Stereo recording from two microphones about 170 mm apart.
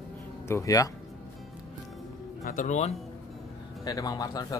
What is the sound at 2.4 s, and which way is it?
Speech, 50° left (ahead or behind).